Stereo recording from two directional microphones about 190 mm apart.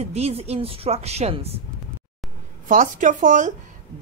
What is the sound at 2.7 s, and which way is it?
Speech, 40° right (ahead or behind).